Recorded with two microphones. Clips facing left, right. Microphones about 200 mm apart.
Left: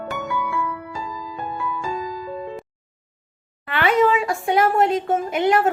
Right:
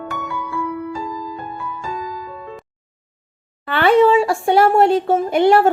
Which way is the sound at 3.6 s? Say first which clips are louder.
Right 5 dB; 30° right (ahead or behind).